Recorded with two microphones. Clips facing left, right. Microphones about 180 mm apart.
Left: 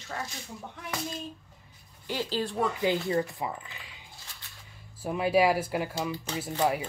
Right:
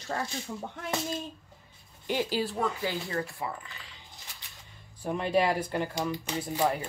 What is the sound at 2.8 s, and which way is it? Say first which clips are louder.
Speech: left 5 dB; 20° left (ahead or behind).